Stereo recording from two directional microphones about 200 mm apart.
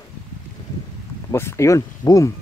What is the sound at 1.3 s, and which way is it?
Speech, 15° left (ahead or behind).